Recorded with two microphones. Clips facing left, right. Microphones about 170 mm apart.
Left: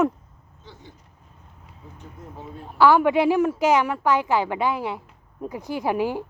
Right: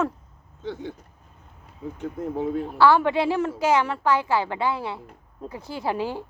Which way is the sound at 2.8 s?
15° left (ahead or behind).